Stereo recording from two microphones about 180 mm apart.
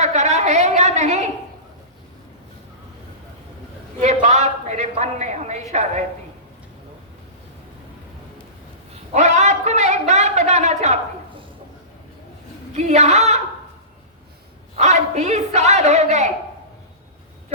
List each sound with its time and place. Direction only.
0.0 s a sound: 40° right (ahead or behind)
4.0 s a woman's voice: 40° right (ahead or behind)
9.1 s a woman's voice: 40° right (ahead or behind)
12.7 s a man's voice: 40° right (ahead or behind)
14.8 s a man's voice: 40° right (ahead or behind)